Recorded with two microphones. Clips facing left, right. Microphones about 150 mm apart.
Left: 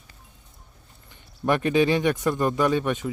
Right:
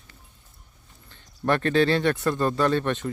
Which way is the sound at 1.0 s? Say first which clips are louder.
Left 1 dB; 15° left (ahead or behind).